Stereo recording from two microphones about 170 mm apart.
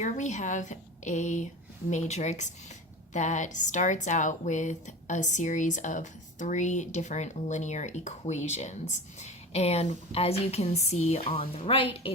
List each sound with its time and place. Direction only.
0.0 s a woman's voice: 45° left (ahead or behind)